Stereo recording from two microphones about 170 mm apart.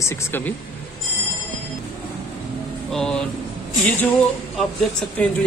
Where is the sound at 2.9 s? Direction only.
5° left (ahead or behind).